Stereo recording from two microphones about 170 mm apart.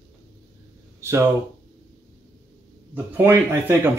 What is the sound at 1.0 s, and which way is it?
Speech, 10° right (ahead or behind).